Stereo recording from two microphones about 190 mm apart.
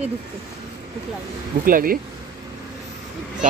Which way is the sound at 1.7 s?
50° right (ahead or behind).